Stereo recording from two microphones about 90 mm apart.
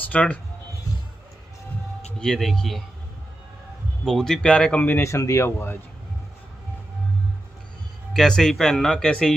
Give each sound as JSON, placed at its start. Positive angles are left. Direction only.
{"t": 0.1, "sound": "speech", "side_deg": 15}
{"t": 2.1, "sound": "speech", "side_deg": 5}
{"t": 4.0, "sound": "speech", "side_deg": 5}
{"t": 5.0, "sound": "speech", "side_deg": 35}
{"t": 8.1, "sound": "speech", "side_deg": 5}